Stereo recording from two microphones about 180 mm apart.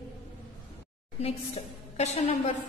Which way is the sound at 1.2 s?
35° left (ahead or behind).